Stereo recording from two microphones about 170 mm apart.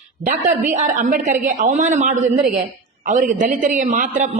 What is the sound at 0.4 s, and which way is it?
A woman's voice, 50° right (ahead or behind).